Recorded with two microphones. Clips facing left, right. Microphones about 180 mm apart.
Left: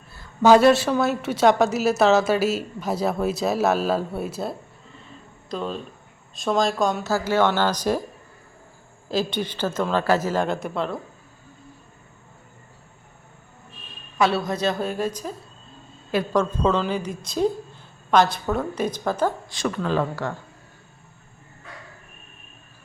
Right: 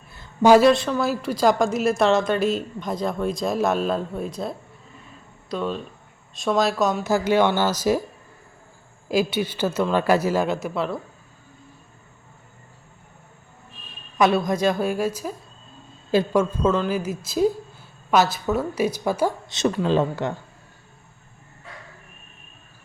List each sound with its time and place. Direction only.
0.1 s a sound: 15° right (ahead or behind)
0.6 s a woman's voice: 5° left (ahead or behind)
7.0 s a woman's voice: 15° right (ahead or behind)
9.0 s a woman's voice: 10° right (ahead or behind)
14.2 s a woman's voice: 15° right (ahead or behind)
16.3 s a woman's voice: 5° right (ahead or behind)
19.5 s speech: 25° right (ahead or behind)